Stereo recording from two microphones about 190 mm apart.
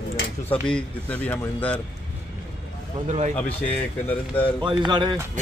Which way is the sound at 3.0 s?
40° right (ahead or behind).